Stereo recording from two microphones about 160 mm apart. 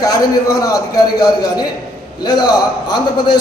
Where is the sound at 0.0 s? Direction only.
25° left (ahead or behind).